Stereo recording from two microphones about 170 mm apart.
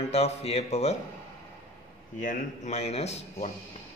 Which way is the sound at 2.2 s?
40° left (ahead or behind).